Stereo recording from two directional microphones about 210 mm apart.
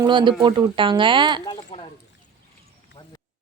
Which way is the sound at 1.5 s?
30° left (ahead or behind).